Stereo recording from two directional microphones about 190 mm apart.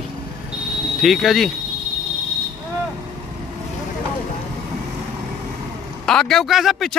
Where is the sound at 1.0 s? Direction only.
Centre (ahead or behind).